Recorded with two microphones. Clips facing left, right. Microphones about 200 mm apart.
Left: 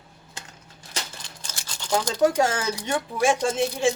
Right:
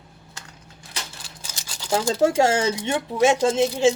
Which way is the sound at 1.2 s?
10° right (ahead or behind).